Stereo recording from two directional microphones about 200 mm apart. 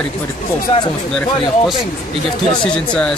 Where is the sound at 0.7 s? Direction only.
30° left (ahead or behind).